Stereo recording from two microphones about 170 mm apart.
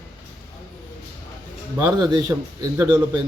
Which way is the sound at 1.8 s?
20° right (ahead or behind).